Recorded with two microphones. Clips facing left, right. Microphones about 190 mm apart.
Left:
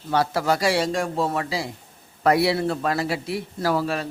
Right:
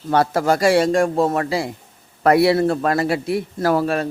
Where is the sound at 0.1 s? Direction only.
50° right (ahead or behind).